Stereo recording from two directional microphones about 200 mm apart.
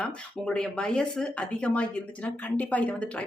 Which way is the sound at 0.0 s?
5° left (ahead or behind).